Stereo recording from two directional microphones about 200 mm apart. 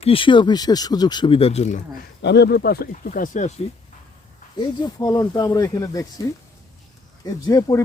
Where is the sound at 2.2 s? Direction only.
55° left (ahead or behind); by 3.6 s 35° left (ahead or behind).